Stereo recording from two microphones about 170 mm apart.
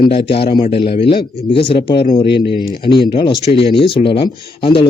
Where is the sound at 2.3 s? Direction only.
75° left (ahead or behind).